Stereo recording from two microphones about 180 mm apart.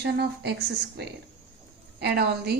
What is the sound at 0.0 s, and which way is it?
Speech, 65° right (ahead or behind).